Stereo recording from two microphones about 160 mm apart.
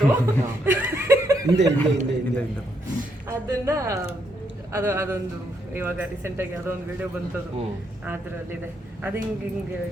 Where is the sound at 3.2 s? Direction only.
20° right (ahead or behind).